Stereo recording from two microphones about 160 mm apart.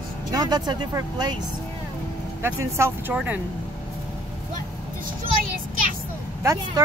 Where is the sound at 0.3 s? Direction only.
25° right (ahead or behind).